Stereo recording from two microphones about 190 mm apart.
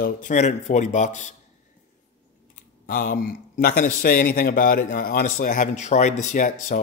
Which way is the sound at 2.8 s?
45° left (ahead or behind).